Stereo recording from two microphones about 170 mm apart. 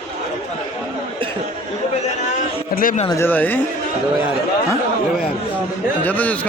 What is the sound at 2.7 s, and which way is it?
Speech, 55° left (ahead or behind).